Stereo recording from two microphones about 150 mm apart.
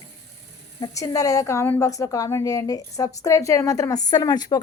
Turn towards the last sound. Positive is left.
turn(degrees=25)  # may be behind; listen again after turning